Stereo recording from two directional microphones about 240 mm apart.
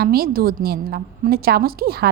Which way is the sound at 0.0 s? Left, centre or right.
Right.